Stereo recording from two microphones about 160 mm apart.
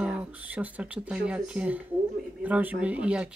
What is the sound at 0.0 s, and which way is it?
Speech, 5° right (ahead or behind).